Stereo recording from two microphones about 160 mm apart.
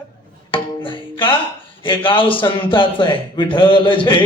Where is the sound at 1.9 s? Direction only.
30° left (ahead or behind).